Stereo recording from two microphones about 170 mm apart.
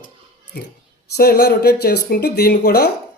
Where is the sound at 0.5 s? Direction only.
70° left (ahead or behind).